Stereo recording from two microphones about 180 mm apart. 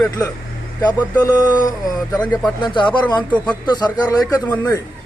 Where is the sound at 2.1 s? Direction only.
5° left (ahead or behind).